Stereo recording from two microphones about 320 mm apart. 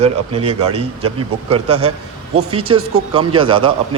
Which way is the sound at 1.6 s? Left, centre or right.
Right.